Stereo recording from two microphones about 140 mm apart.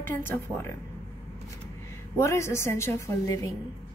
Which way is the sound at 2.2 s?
20° left (ahead or behind).